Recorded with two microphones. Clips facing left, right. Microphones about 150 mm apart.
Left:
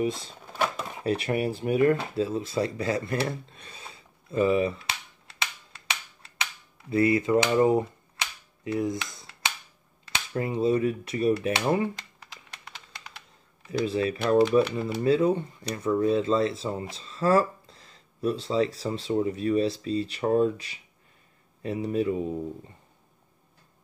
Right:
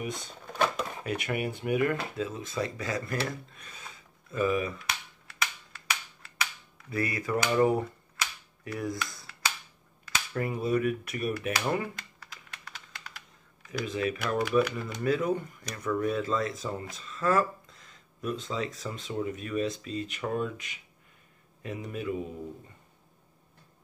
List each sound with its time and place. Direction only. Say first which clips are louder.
0.0 s speech: left 8 dB; 30° left (ahead or behind)
0.5 s a sound: even; 5° left (ahead or behind)
1.0 s speech: left 7 dB; 30° left (ahead or behind)
3.3 s cap gun: left 4 dB; 30° left (ahead or behind)
6.8 s speech: left 9 dB; 25° left (ahead or behind)
8.6 s finger snapping: left 6 dB; 20° left (ahead or behind)
10.0 s speech: left 2 dB; 25° left (ahead or behind)
13.7 s speech: left 5 dB; 30° left (ahead or behind)